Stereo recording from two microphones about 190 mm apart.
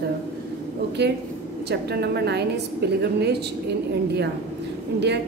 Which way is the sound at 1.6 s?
60° right (ahead or behind).